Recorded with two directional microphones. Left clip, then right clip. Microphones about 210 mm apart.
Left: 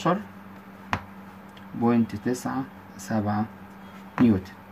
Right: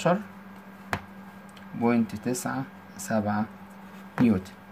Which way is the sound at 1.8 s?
30° right (ahead or behind).